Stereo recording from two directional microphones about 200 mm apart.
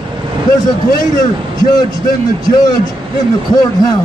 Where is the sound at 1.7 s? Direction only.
20° left (ahead or behind).